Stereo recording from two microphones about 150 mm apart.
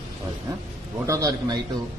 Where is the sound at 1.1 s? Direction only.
20° right (ahead or behind).